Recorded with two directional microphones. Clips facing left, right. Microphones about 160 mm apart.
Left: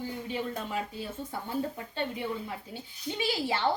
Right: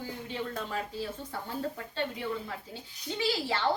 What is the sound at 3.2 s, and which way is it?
Speech, 15° left (ahead or behind).